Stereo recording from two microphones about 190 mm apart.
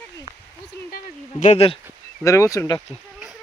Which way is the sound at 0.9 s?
45° left (ahead or behind).